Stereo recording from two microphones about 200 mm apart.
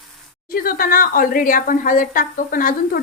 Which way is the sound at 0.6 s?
45° left (ahead or behind).